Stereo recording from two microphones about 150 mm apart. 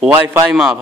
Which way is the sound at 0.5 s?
Centre (ahead or behind).